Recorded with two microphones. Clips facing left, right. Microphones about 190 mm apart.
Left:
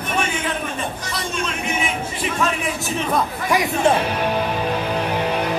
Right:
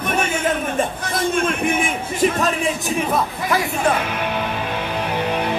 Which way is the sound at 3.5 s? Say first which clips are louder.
Left 3 dB; 15° left (ahead or behind).